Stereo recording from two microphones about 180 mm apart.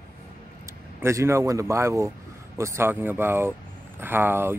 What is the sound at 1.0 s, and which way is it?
Speech, 15° right (ahead or behind).